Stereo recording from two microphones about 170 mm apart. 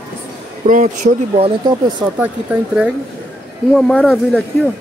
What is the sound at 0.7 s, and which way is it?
Speech, 45° right (ahead or behind).